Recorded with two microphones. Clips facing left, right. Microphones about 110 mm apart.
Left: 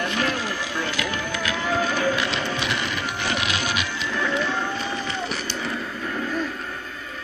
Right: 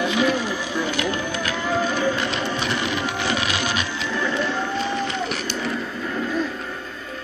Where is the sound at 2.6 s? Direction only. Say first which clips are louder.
Right 3 dB; 30° right (ahead or behind).